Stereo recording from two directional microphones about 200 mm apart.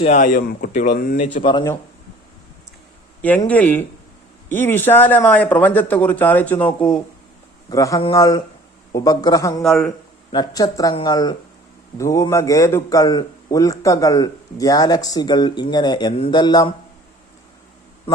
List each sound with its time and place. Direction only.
0.0 s speech: 35° left (ahead or behind)
1.3 s a man's voice: 25° left (ahead or behind)
3.2 s a man's voice: 10° left (ahead or behind)
7.7 s a man's voice: 15° left (ahead or behind)
9.6 s speech: centre (ahead or behind)
10.3 s a man's voice: 20° left (ahead or behind)